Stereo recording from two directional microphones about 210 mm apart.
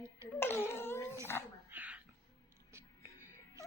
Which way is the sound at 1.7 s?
5° right (ahead or behind).